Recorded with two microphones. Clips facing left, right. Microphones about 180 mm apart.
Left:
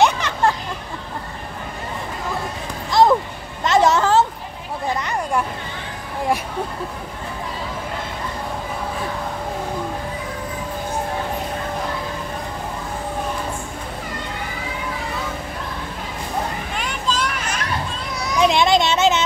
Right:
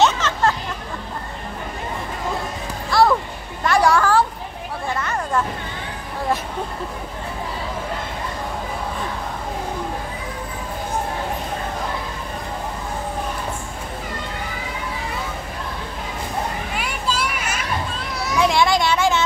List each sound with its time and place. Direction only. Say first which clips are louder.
0.0 s children playing: left 1 dB; 15° left (ahead or behind)
2.9 s music: left 2 dB; 20° left (ahead or behind)
3.6 s a sound: left 1 dB; 20° left (ahead or behind)
4.9 s hubbub: even; 15° left (ahead or behind)
16.7 s children playing: left 2 dB; 10° right (ahead or behind)
18.4 s children playing: left 2 dB; 20° left (ahead or behind)